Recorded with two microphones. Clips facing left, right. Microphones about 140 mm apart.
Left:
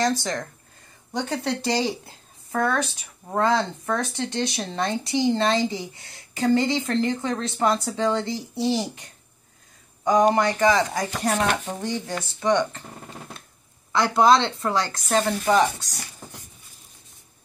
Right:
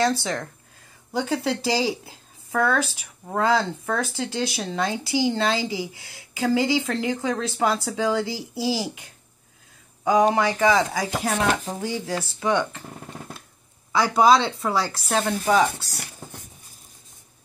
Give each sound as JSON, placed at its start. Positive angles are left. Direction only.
{"t": 0.0, "sound": "a woman's voice", "side_deg": -5}
{"t": 13.9, "sound": "a woman's voice", "side_deg": -5}
{"t": 15.9, "sound": "dog", "side_deg": -60}